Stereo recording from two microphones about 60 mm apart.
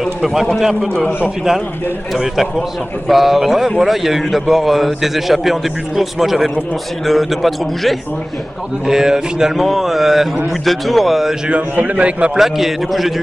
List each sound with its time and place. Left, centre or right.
0.0 s a man's voice: centre
2.1 s a man's voice: centre
11.4 s a man's voice: right
12.4 s a man's voice: centre